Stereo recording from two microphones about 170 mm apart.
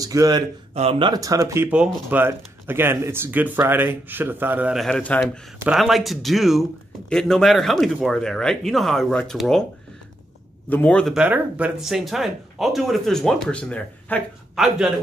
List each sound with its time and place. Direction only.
0.0 s speech: 20° right (ahead or behind)
0.7 s speech: 35° right (ahead or behind); by 4.8 s 10° right (ahead or behind)
4.8 s speech: 5° left (ahead or behind)
10.7 s speech: 10° left (ahead or behind)
11.1 s speech: 10° right (ahead or behind); by 14.2 s 10° left (ahead or behind)
14.5 s a man's voice: centre (ahead or behind)